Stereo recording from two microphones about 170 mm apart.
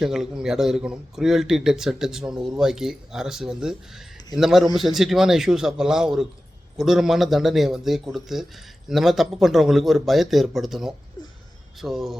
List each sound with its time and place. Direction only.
0.0 s a man's voice: 5° right (ahead or behind)